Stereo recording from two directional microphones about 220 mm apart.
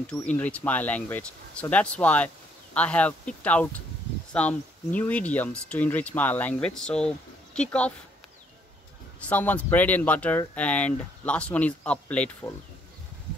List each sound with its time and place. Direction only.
0.2 s speech: 5° left (ahead or behind)
9.2 s speech: 5° left (ahead or behind)